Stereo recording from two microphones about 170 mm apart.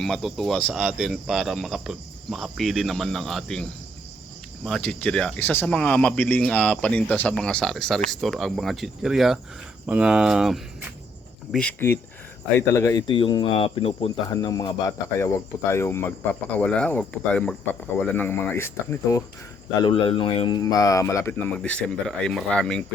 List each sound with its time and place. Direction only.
0.0 s speech: centre (ahead or behind)
12.5 s speech: 15° left (ahead or behind)
13.1 s speech: 30° left (ahead or behind)
14.3 s speech: 20° left (ahead or behind)
19.8 s speech: 30° left (ahead or behind)
20.6 s speech: 20° left (ahead or behind); by 22.9 s 5° left (ahead or behind)